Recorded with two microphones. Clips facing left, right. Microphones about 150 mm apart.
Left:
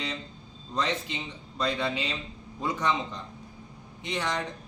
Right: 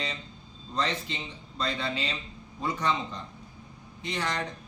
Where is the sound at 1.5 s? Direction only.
15° left (ahead or behind).